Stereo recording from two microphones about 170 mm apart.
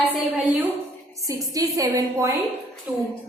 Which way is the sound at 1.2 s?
20° right (ahead or behind).